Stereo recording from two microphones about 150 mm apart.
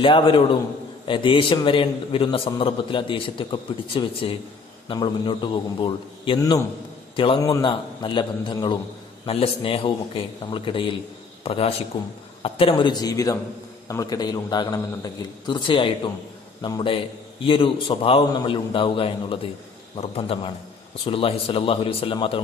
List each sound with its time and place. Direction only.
0.0 s a man's voice: 35° left (ahead or behind)